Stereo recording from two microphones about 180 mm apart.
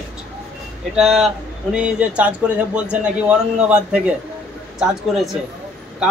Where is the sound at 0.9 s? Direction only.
Centre (ahead or behind).